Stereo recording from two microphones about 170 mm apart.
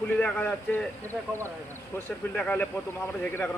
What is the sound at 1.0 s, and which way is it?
Speech, 15° right (ahead or behind).